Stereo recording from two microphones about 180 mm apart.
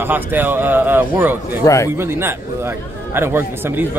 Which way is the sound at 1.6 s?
15° left (ahead or behind).